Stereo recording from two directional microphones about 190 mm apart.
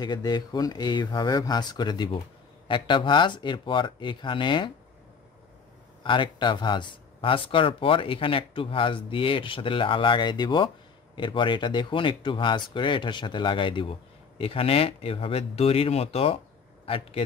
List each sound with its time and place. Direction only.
0.0 s speech: 20° left (ahead or behind)
6.0 s speech: 25° left (ahead or behind)